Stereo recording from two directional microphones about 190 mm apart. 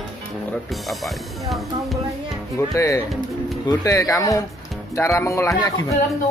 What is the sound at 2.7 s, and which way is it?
Speech, 15° left (ahead or behind).